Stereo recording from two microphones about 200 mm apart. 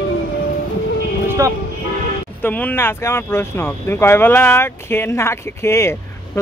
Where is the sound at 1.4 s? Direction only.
15° right (ahead or behind).